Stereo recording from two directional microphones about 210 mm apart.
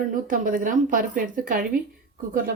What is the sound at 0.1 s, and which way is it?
A woman's voice, 40° right (ahead or behind).